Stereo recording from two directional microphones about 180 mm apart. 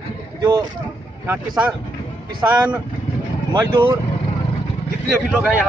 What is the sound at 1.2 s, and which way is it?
Speech, 10° right (ahead or behind).